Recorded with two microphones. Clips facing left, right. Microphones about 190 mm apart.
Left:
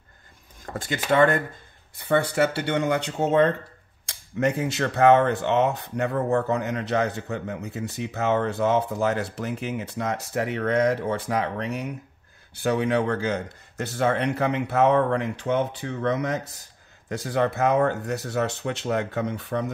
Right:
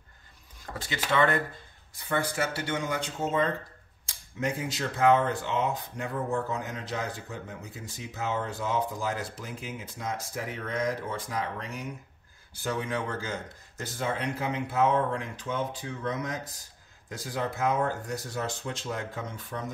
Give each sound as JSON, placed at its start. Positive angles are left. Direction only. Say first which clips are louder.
{"t": 0.6, "sound": "speech", "louder": "left 5 dB", "side_deg": 50}
{"t": 2.0, "sound": "speech", "louder": "left 8 dB", "side_deg": 70}